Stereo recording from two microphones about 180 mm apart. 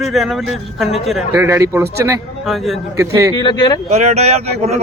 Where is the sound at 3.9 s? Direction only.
40° right (ahead or behind).